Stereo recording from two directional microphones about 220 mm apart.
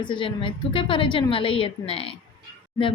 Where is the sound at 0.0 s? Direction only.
20° left (ahead or behind).